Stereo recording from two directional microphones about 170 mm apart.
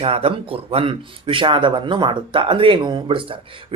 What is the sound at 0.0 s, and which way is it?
Speech, 35° right (ahead or behind).